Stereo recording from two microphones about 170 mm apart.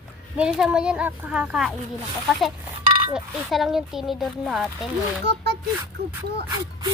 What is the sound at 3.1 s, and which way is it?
Speech, centre (ahead or behind).